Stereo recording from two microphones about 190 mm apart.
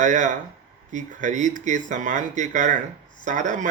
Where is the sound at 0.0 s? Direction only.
40° right (ahead or behind).